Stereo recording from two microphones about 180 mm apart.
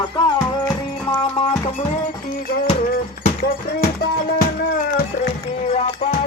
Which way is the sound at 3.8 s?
55° left (ahead or behind).